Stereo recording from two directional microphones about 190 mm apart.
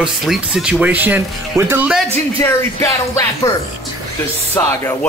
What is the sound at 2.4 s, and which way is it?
Speech, 15° left (ahead or behind).